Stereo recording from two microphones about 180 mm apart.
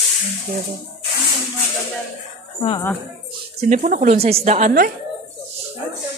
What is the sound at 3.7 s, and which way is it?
A woman's voice, 45° right (ahead or behind).